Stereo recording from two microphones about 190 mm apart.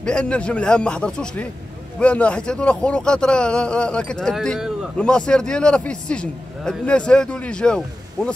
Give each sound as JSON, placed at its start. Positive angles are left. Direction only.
{"t": 0.0, "sound": "a man's voice", "side_deg": 5}